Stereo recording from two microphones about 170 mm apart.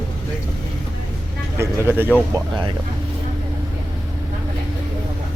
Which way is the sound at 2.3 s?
25° right (ahead or behind).